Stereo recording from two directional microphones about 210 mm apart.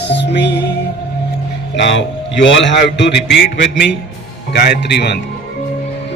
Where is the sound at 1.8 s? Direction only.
60° left (ahead or behind).